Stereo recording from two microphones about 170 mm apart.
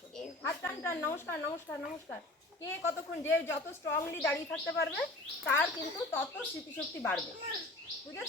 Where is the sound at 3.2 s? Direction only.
15° left (ahead or behind).